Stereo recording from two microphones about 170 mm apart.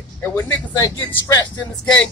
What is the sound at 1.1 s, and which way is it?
Speech, 20° left (ahead or behind).